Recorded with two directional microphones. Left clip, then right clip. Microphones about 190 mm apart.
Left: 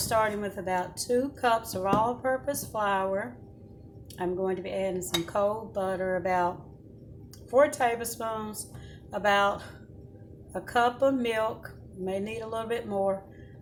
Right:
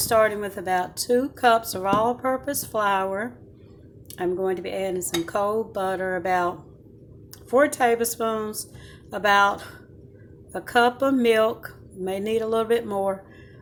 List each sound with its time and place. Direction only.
0.1 s speech: 50° right (ahead or behind)
7.5 s speech: 50° right (ahead or behind)